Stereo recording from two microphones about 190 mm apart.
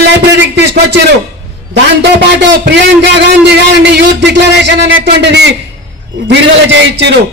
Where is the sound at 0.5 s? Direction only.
60° right (ahead or behind).